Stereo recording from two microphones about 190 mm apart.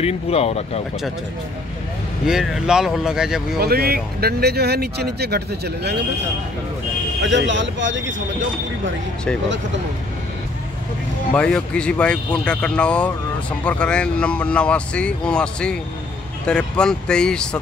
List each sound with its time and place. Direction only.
0.0 s speech: 30° left (ahead or behind)
2.2 s speech: 5° right (ahead or behind)
3.5 s speech: 55° right (ahead or behind)
7.2 s speech: 75° right (ahead or behind)
11.3 s speech: 5° left (ahead or behind)